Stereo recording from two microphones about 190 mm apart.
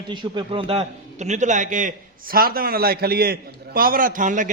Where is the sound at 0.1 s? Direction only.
25° right (ahead or behind).